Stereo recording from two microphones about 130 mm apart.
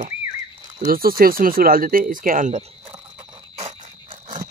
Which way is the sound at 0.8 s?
90° right.